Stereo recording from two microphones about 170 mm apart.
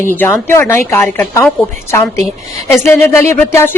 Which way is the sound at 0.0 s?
15° left (ahead or behind).